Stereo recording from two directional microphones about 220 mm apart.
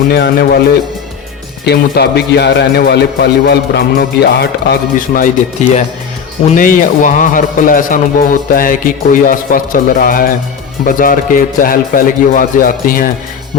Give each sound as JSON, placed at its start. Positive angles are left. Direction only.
{"t": 0.1, "sound": "a man's voice", "side_deg": 45}